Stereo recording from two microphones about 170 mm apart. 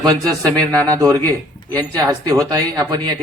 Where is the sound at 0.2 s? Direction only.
20° right (ahead or behind).